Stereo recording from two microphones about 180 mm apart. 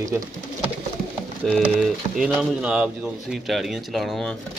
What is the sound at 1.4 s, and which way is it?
Speech, centre (ahead or behind).